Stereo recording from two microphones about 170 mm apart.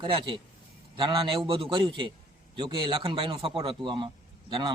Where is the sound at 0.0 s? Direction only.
30° right (ahead or behind).